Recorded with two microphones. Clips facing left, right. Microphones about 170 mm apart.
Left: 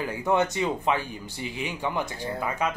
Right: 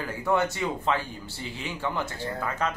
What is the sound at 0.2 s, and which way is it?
A man's voice, 20° left (ahead or behind).